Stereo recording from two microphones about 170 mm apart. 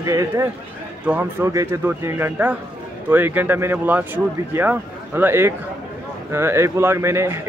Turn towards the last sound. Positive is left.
turn(degrees=-15)  # may be behind; listen again after turning